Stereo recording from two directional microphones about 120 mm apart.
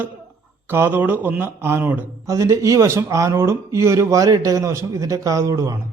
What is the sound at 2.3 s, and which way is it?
Speech, 25° right (ahead or behind).